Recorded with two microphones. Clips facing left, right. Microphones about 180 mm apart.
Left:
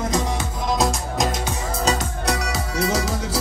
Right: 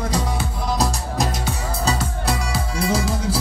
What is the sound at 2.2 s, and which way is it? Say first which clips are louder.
Music: even; 30° right (ahead or behind).